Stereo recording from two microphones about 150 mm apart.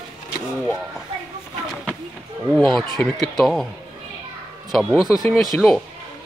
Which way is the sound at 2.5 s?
Centre (ahead or behind).